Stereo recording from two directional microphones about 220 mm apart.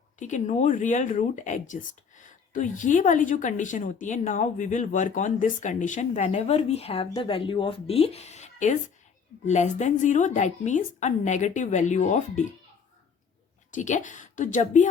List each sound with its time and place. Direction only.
0.2 s speech: 35° left (ahead or behind)
13.7 s speech: 35° left (ahead or behind)